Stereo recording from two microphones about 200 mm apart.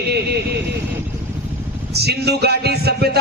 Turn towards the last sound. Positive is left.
turn(degrees=-55)  # may be behind; listen again after turning